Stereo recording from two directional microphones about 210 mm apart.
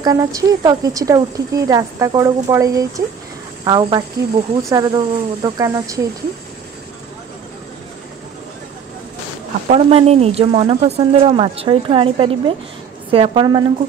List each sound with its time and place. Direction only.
0.0 s speech: 15° right (ahead or behind)
9.7 s speech: 25° right (ahead or behind)